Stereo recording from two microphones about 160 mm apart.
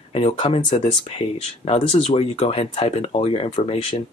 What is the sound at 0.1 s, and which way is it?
Speech, 40° left (ahead or behind).